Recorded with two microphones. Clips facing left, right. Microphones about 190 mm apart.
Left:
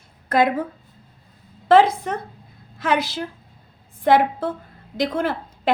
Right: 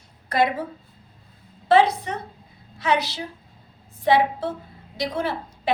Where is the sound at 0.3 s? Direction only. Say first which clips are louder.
Left 3 dB; 55° left (ahead or behind).